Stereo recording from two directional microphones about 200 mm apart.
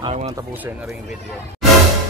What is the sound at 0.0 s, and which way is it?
Speech, 30° right (ahead or behind).